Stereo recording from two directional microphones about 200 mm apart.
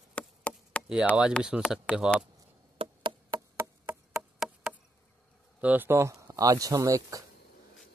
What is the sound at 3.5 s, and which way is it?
Chop, 10° right (ahead or behind).